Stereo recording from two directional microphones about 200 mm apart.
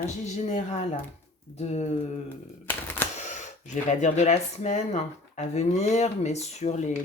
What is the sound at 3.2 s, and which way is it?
Speech, 35° left (ahead or behind).